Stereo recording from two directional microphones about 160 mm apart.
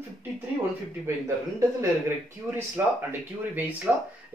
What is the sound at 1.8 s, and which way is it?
Speech, 15° right (ahead or behind).